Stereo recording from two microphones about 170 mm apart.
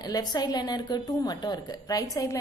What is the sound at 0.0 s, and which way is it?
A woman's voice, 25° left (ahead or behind).